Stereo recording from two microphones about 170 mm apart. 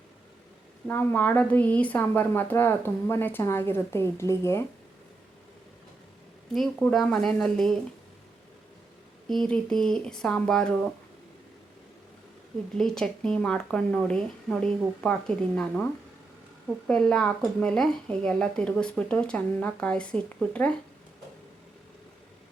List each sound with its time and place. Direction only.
0.9 s a woman's voice: 10° left (ahead or behind)
6.5 s speech: centre (ahead or behind)
9.3 s speech: 5° left (ahead or behind)
12.7 s a woman's voice: 5° left (ahead or behind)